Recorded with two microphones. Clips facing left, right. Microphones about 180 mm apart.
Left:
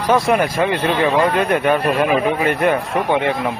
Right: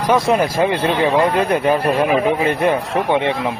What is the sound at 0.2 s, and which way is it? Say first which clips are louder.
Speech: right 1 dB; 25° right (ahead or behind).